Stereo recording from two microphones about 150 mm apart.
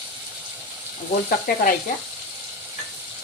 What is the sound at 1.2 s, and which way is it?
Speech, 70° left (ahead or behind).